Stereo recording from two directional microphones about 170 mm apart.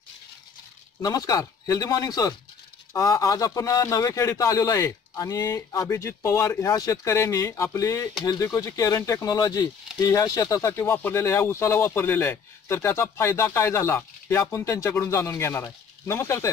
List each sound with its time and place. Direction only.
1.0 s speech: 20° left (ahead or behind)